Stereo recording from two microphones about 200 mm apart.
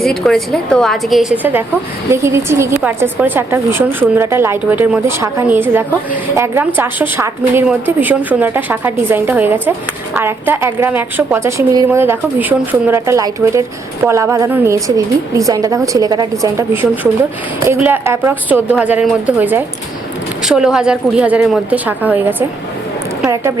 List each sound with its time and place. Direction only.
0.0 s a woman's voice: centre (ahead or behind); by 23.5 s 15° right (ahead or behind)